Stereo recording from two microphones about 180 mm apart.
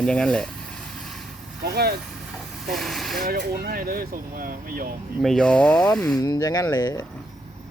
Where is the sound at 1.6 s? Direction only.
60° right (ahead or behind).